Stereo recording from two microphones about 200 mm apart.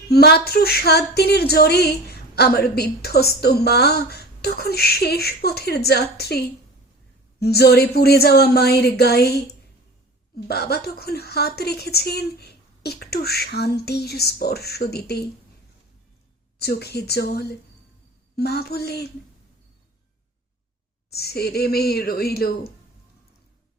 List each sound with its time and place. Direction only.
0.1 s speech: 50° left (ahead or behind)
16.6 s speech: 55° left (ahead or behind)
21.1 s speech: 50° left (ahead or behind)